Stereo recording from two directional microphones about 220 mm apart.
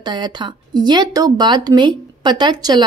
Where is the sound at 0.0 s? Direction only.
20° right (ahead or behind).